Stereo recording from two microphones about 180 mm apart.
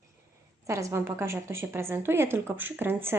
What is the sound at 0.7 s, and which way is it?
A woman's voice, 15° right (ahead or behind).